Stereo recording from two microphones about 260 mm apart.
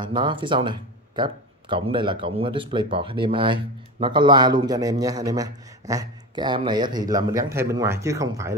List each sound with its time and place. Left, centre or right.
0.0 s speech: centre